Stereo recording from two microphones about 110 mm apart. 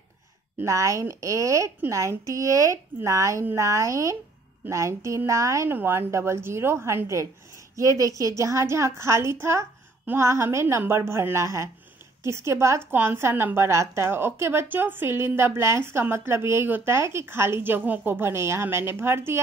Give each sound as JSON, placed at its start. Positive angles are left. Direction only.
{"t": 0.6, "sound": "a woman's voice", "side_deg": -30}